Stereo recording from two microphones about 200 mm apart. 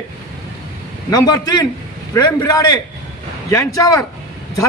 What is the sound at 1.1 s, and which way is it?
A man's voice, 20° left (ahead or behind).